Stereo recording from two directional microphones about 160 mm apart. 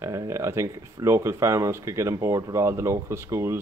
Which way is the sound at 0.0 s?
20° right (ahead or behind).